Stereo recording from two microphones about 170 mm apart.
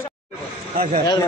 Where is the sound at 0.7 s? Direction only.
55° right (ahead or behind).